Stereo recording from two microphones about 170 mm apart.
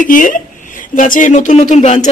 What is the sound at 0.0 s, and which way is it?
A man's voice, 50° left (ahead or behind).